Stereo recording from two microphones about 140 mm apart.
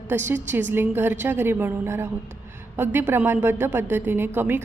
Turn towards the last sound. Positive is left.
turn(degrees=-15)  # may be behind; listen again after turning